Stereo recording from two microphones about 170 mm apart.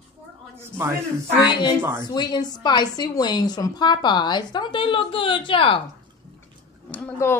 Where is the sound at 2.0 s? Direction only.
25° left (ahead or behind).